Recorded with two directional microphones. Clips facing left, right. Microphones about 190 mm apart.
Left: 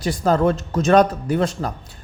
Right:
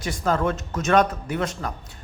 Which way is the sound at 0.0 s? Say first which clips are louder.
Left 5 dB; 35° left (ahead or behind).